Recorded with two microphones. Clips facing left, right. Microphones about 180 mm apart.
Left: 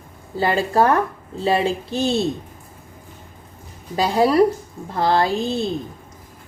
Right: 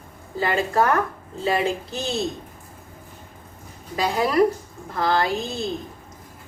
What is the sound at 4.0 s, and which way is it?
A woman's voice, 30° left (ahead or behind).